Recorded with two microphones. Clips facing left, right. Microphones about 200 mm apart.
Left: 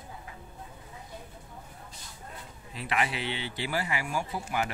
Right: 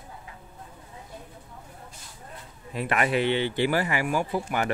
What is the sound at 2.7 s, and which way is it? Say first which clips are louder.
Speech: right 6 dB; 50° right (ahead or behind).